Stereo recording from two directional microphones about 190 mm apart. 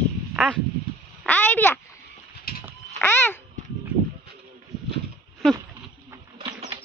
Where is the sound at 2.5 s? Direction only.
55° left (ahead or behind).